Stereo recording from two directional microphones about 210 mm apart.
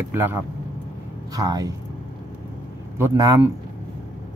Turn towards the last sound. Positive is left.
turn(degrees=-10)  # may be behind; listen again after turning